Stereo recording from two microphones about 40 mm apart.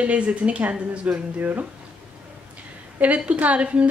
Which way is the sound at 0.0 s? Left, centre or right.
Right.